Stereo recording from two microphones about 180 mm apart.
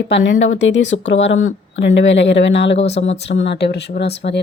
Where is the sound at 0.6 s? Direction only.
90° left.